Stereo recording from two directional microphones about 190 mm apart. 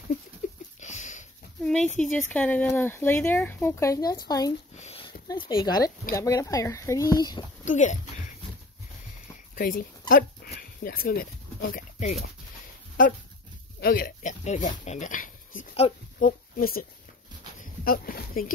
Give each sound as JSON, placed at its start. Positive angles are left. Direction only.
{"t": 0.4, "sound": "a sound", "side_deg": 45}
{"t": 0.7, "sound": "sniff", "side_deg": 40}
{"t": 1.6, "sound": "speech", "side_deg": 5}
{"t": 4.7, "sound": "a sound", "side_deg": 30}
{"t": 5.3, "sound": "speech", "side_deg": 25}
{"t": 7.6, "sound": "a sound", "side_deg": 40}
{"t": 9.6, "sound": "speech", "side_deg": 45}
{"t": 13.7, "sound": "speech", "side_deg": 50}
{"t": 14.4, "sound": "speech", "side_deg": 35}
{"t": 17.8, "sound": "speech", "side_deg": 50}